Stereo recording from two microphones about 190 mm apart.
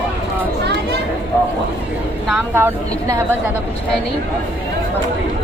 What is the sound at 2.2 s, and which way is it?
A woman's voice, 10° right (ahead or behind).